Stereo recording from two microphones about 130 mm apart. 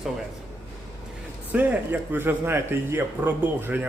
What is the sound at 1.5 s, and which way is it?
Speech, 10° right (ahead or behind).